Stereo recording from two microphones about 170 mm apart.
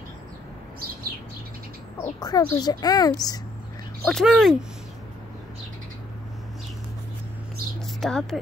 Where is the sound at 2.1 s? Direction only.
20° left (ahead or behind).